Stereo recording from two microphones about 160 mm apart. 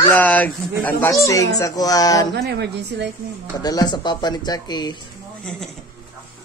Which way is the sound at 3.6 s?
25° left (ahead or behind).